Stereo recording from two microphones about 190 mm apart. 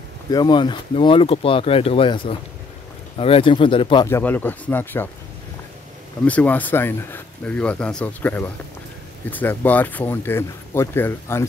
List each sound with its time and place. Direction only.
0.3 s speech: 20° left (ahead or behind)
4.1 s speech: 10° left (ahead or behind)
6.2 s speech: 10° left (ahead or behind)